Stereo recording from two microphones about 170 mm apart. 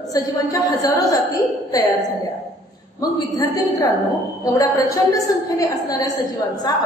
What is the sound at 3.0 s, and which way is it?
A woman's voice, 20° left (ahead or behind).